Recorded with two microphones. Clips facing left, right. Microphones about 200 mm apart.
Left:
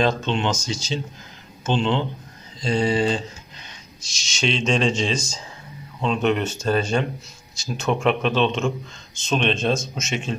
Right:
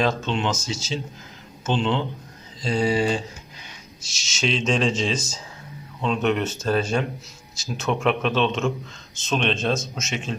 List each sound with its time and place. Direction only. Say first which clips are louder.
0.0 s a man's voice: left 2 dB; 5° right (ahead or behind)